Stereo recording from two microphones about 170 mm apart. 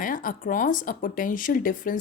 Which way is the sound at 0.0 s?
55° left (ahead or behind).